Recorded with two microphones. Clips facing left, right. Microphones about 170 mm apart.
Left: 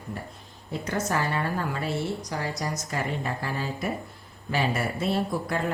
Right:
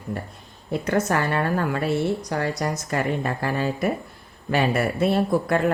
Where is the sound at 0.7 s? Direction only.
65° right (ahead or behind).